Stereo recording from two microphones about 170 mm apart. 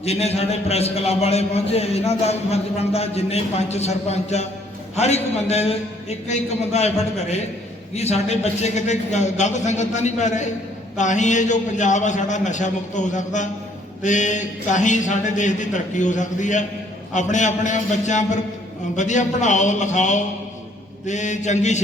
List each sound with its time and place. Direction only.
0.0 s a man's voice: 40° left (ahead or behind)